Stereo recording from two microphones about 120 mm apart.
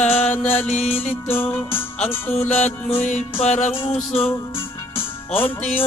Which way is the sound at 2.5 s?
70° left (ahead or behind).